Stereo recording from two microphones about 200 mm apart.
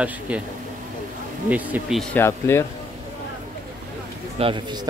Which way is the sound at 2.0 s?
10° left (ahead or behind).